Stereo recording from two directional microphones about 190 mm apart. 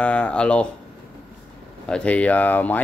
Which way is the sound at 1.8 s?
5° left (ahead or behind).